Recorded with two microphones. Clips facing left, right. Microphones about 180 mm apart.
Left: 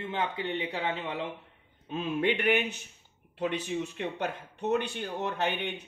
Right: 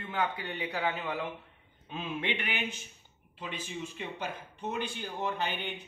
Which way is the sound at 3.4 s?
70° left (ahead or behind).